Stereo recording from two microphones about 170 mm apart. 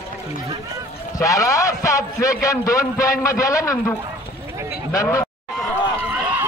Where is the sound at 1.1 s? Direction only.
20° left (ahead or behind).